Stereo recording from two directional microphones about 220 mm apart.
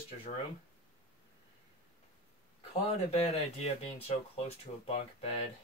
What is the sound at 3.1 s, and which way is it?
Speech, 30° left (ahead or behind).